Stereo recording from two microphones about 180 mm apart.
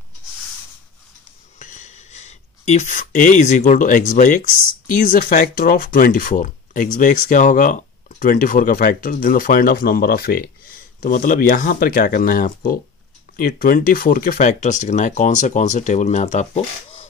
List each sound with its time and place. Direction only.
1.6 s speech: 40° left (ahead or behind)